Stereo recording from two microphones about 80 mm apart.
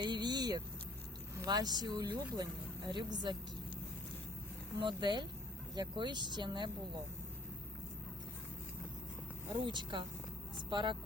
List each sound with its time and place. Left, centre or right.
0.0 s vehicle: right
1.5 s speech: right
2.9 s speech: right
4.8 s speech: right
9.5 s speech: right